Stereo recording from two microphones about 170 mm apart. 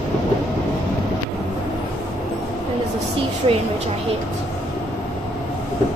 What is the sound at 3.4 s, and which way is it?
Speech, 30° right (ahead or behind).